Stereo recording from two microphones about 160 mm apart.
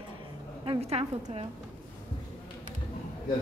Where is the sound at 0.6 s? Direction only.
35° right (ahead or behind).